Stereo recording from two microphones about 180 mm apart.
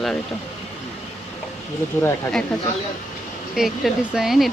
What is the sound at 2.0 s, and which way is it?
Speech, 5° left (ahead or behind).